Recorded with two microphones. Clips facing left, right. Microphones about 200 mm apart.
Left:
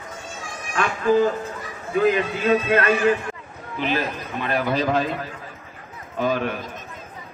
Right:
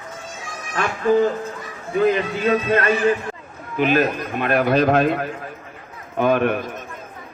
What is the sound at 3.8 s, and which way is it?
A man's voice, 50° right (ahead or behind).